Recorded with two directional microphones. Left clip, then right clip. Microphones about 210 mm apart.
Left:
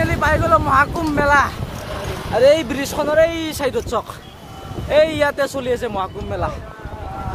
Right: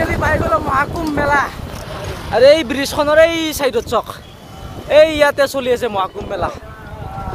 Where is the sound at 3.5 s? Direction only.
20° right (ahead or behind).